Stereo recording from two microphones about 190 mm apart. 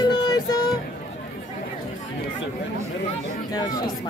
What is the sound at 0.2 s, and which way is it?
Child singing, 20° left (ahead or behind).